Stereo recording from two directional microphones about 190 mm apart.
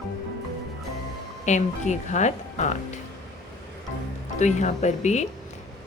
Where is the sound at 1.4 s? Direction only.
40° left (ahead or behind).